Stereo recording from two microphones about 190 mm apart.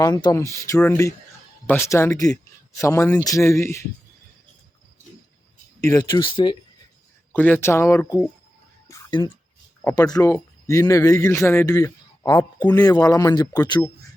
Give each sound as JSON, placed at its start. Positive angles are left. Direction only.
{"t": 0.0, "sound": "speech", "side_deg": 20}
{"t": 5.8, "sound": "speech", "side_deg": 20}
{"t": 7.3, "sound": "speech", "side_deg": 10}
{"t": 8.9, "sound": "a sound", "side_deg": 25}
{"t": 9.8, "sound": "speech", "side_deg": 15}